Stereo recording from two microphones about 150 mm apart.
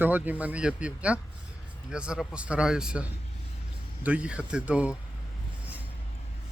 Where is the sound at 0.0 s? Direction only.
10° right (ahead or behind).